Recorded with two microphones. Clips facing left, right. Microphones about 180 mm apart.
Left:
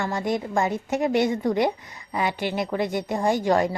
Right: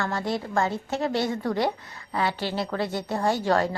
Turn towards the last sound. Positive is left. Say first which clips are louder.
# left 2 dB
turn(degrees=15)  # may be behind; listen again after turning